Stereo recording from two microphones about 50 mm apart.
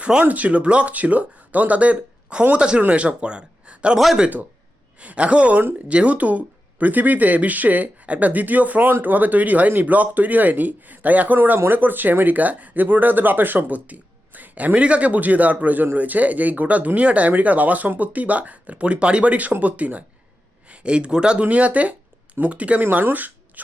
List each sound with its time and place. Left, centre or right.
0.0 s speech: right
3.9 s speech: centre
4.9 s speech: right
11.3 s speech: right; by 21.4 s centre
21.4 s speech: right
22.8 s speech: right